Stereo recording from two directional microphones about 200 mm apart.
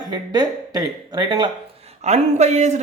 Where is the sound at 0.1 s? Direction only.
20° right (ahead or behind).